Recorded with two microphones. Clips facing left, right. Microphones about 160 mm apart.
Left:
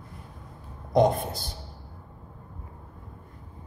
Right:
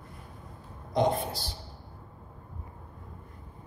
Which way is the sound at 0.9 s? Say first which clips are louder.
Left 5 dB; 50° left (ahead or behind).